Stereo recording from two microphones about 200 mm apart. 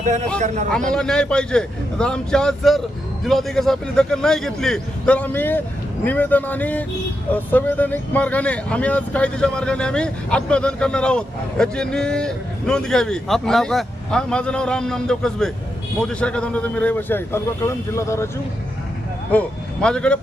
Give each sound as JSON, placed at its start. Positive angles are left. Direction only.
{"t": 0.0, "sound": "a man's voice", "side_deg": -40}
{"t": 0.7, "sound": "a man's voice", "side_deg": 5}
{"t": 19.3, "sound": "speech", "side_deg": 5}